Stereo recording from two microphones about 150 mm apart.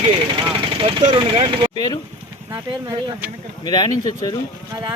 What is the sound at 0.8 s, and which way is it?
Vehicle, 40° right (ahead or behind).